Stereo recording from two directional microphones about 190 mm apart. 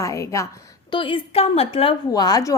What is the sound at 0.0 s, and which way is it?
A woman's voice, 15° left (ahead or behind).